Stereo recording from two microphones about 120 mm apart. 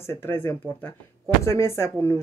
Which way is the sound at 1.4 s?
20° left (ahead or behind).